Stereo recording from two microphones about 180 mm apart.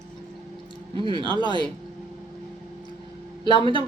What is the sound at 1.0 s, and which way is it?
Speech, 25° right (ahead or behind).